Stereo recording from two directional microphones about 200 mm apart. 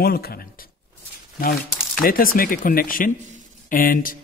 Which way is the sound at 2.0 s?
45° left (ahead or behind).